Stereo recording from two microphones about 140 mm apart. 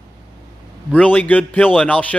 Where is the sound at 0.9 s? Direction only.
10° left (ahead or behind).